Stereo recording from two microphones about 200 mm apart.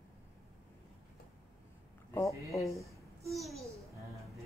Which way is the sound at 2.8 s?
15° right (ahead or behind).